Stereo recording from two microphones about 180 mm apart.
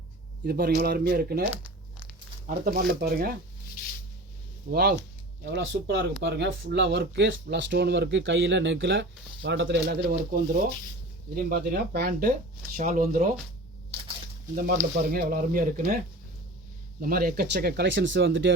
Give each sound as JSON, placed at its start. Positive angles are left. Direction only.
{"t": 0.4, "sound": "speech", "side_deg": -55}
{"t": 2.6, "sound": "speech", "side_deg": -55}
{"t": 4.7, "sound": "speech", "side_deg": -60}
{"t": 5.5, "sound": "speech", "side_deg": -70}
{"t": 14.5, "sound": "speech", "side_deg": -50}
{"t": 17.0, "sound": "speech", "side_deg": -55}